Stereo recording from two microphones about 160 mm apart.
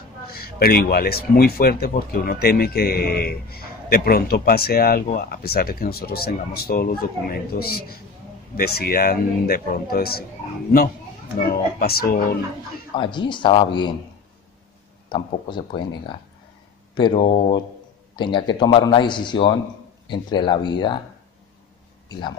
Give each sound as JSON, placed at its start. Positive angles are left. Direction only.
{"t": 0.3, "sound": "speech", "side_deg": 70}
{"t": 11.4, "sound": "speech", "side_deg": 70}
{"t": 12.9, "sound": "speech", "side_deg": 30}
{"t": 15.0, "sound": "a man's voice", "side_deg": 30}